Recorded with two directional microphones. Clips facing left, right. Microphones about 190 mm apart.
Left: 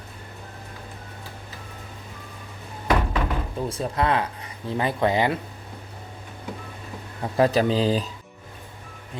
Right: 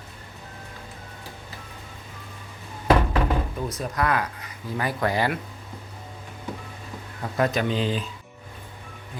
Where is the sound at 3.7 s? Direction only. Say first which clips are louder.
Left 3 dB; 30° left (ahead or behind).